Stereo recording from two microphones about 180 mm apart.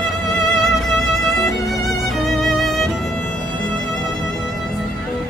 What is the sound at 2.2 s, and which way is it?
Music, centre (ahead or behind).